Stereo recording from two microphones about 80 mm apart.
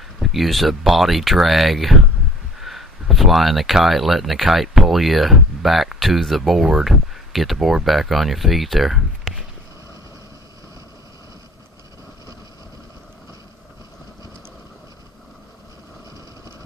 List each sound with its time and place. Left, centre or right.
0.2 s speech: centre